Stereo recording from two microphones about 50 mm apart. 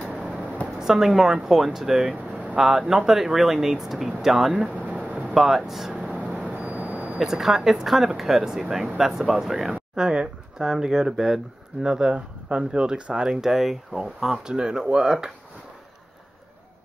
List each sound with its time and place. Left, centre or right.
0.1 s a sound: right
0.7 s speech: centre
2.1 s air conditioning: right
2.9 s speech: centre
4.6 s a sound: right
5.3 s speech: centre
5.9 s vehicle: right
6.3 s vehicle: right
7.2 s speech: centre
9.6 s speech: centre
11.8 s speech: centre